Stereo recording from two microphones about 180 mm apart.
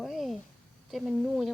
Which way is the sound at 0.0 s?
Centre (ahead or behind).